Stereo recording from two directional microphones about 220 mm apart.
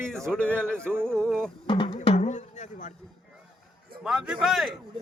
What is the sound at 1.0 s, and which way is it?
Speech, 5° left (ahead or behind).